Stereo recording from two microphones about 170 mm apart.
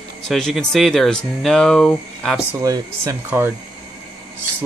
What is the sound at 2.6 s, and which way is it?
Speech, 20° right (ahead or behind).